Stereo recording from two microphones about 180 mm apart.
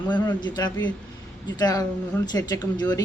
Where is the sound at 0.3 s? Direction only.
25° left (ahead or behind).